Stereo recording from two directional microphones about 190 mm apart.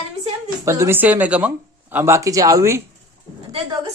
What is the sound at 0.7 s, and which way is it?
Speech, 15° right (ahead or behind).